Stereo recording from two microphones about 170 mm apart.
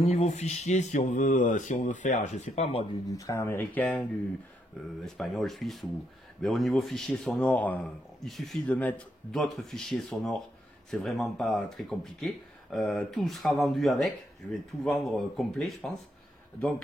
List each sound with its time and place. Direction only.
0.0 s speech: 40° left (ahead or behind)
3.1 s speech: 20° left (ahead or behind)
5.0 s speech: centre (ahead or behind)